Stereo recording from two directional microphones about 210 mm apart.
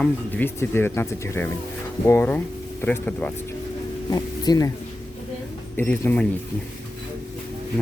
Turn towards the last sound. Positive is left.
turn(degrees=10)  # may be behind; listen again after turning